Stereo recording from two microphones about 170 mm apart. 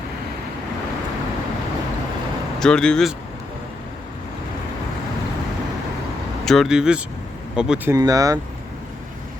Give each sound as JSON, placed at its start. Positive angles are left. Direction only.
{"t": 2.6, "sound": "speech", "side_deg": 5}
{"t": 6.4, "sound": "speech", "side_deg": 0}
{"t": 7.9, "sound": "speech", "side_deg": -20}